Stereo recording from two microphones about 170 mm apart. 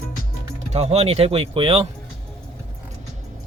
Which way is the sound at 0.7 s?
40° right (ahead or behind).